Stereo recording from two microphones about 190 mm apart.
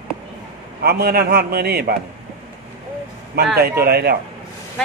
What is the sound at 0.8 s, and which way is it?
A man's voice, 55° right (ahead or behind).